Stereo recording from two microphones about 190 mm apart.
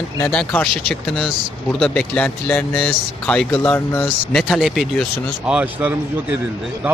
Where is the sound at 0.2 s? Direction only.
10° left (ahead or behind).